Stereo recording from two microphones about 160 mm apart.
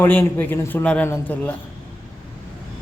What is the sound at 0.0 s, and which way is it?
A man's voice, 10° left (ahead or behind).